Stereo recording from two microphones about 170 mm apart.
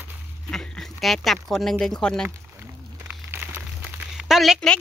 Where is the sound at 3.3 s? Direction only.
10° right (ahead or behind).